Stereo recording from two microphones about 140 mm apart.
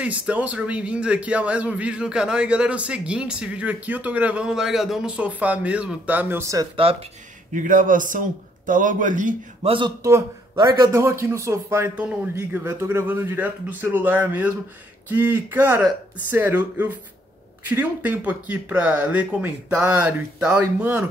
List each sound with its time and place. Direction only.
0.0 s a man's voice: 10° right (ahead or behind)
6.8 s speech: 45° right (ahead or behind)
7.5 s a man's voice: 70° right (ahead or behind)
9.6 s speech: 40° right (ahead or behind)
10.5 s a man's voice: 30° right (ahead or behind); by 21.1 s 10° right (ahead or behind)